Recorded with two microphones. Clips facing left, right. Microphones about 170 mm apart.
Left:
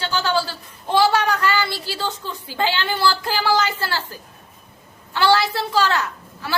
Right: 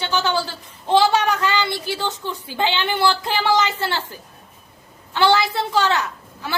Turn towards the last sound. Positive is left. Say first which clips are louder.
# even
turn(degrees=-20)  # may be behind; listen again after turning